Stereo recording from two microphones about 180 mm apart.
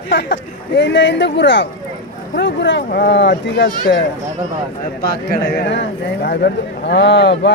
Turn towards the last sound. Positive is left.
turn(degrees=75)  # may be behind; listen again after turning